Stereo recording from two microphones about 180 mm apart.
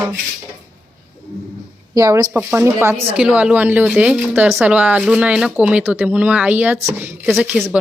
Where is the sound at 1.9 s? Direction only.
20° right (ahead or behind).